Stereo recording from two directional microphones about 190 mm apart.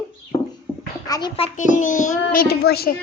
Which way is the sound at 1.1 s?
20° left (ahead or behind).